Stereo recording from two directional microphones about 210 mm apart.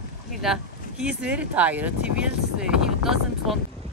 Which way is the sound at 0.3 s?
Centre (ahead or behind).